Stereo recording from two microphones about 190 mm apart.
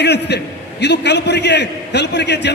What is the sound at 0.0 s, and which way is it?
A man's voice, 60° left (ahead or behind).